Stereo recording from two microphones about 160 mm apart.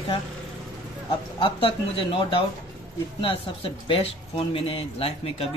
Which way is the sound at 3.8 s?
30° left (ahead or behind).